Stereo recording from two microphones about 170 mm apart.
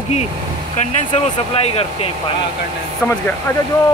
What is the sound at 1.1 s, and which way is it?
Speech, 35° left (ahead or behind).